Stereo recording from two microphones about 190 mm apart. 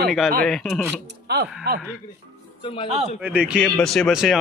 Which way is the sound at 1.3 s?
60° right (ahead or behind).